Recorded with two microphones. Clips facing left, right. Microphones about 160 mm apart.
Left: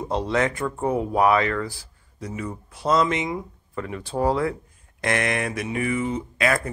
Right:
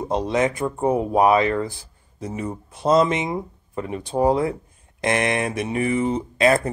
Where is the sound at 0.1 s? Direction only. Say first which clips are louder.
Right 2 dB; 20° right (ahead or behind).